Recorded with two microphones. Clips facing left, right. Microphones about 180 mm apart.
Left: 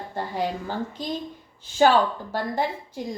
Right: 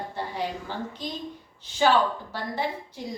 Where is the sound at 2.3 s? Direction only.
45° left (ahead or behind).